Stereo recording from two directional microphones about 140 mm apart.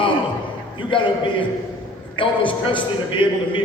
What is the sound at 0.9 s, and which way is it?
A man's voice, 40° left (ahead or behind).